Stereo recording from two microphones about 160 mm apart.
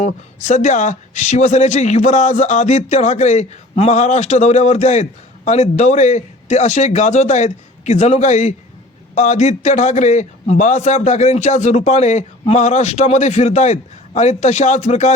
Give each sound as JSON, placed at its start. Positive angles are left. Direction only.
{"t": 0.0, "sound": "a man's voice", "side_deg": 45}